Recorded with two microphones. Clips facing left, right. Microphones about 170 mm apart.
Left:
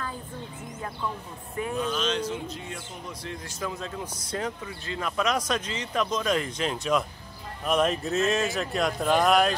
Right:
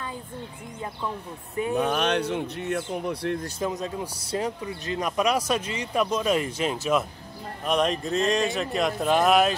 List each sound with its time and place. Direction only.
1.8 s speech: 65° right (ahead or behind)
3.4 s speech: 30° right (ahead or behind)
3.7 s speech: 15° right (ahead or behind); by 9.5 s centre (ahead or behind)